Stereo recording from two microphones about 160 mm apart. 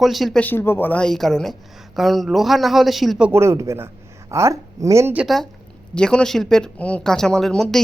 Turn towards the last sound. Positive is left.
turn(degrees=5)  # may be behind; listen again after turning